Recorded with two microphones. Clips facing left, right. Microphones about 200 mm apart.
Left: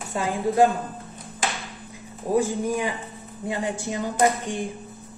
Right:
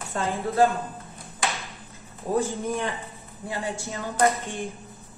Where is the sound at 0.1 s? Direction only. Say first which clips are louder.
Left 3 dB; 15° left (ahead or behind).